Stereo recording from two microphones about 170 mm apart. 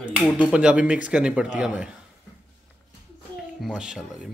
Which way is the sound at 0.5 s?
5° right (ahead or behind).